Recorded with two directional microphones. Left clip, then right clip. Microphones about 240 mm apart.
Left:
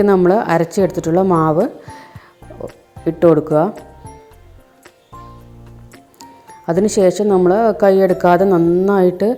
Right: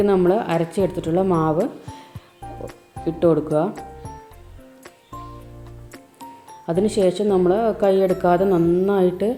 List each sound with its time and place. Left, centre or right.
0.0 s speech: left
3.0 s speech: left
6.7 s speech: left